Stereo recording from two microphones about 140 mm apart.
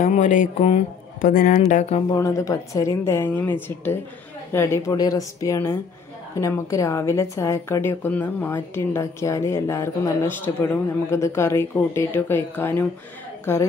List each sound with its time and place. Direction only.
0.0 s speech: 65° left (ahead or behind)
1.2 s a woman's voice: 85° left; by 2.0 s 60° left (ahead or behind)
2.0 s a woman's voice: 20° left (ahead or behind)